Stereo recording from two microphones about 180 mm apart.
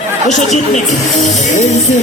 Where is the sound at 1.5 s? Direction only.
40° left (ahead or behind).